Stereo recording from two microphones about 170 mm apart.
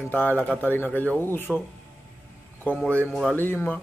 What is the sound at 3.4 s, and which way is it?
Speech, 10° left (ahead or behind).